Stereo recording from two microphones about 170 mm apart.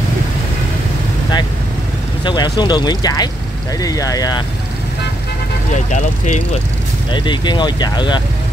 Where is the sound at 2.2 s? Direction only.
25° left (ahead or behind).